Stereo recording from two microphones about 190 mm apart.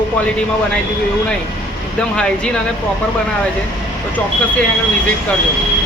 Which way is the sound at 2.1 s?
5° left (ahead or behind).